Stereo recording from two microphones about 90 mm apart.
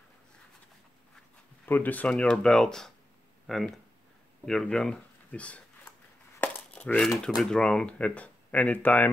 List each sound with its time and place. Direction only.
1.7 s speech: 20° left (ahead or behind)
6.4 s a sound: 20° left (ahead or behind)
7.2 s speech: 5° left (ahead or behind); by 9.1 s 20° left (ahead or behind)